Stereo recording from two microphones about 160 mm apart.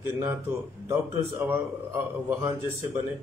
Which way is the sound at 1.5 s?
15° right (ahead or behind).